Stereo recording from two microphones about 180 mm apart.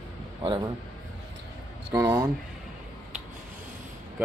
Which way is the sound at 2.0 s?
15° right (ahead or behind).